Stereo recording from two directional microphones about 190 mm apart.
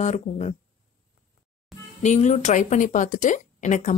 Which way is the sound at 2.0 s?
40° left (ahead or behind).